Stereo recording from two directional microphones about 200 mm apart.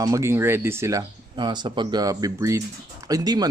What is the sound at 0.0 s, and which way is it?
Speech, 15° right (ahead or behind).